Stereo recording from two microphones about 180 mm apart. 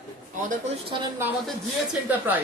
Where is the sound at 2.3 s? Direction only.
10° right (ahead or behind).